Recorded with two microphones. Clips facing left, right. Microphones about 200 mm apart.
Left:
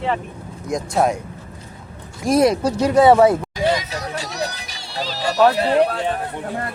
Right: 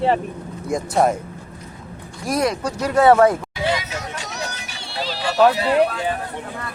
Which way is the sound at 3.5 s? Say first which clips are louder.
Left 3 dB; 40° left (ahead or behind).